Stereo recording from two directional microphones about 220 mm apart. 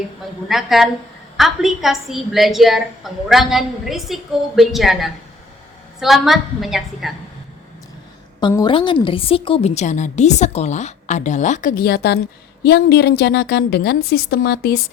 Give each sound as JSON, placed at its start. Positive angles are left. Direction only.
{"t": 0.4, "sound": "a woman's voice", "side_deg": 0}
{"t": 8.4, "sound": "a woman's voice", "side_deg": 20}